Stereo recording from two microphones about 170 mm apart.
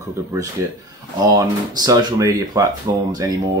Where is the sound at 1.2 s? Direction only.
20° right (ahead or behind).